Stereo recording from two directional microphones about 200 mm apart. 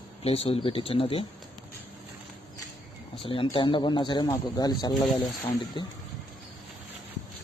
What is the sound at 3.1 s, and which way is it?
Speech, 25° left (ahead or behind).